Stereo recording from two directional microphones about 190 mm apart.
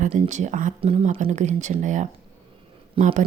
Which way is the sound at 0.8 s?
30° right (ahead or behind).